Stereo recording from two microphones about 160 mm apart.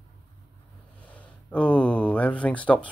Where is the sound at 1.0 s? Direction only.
10° left (ahead or behind).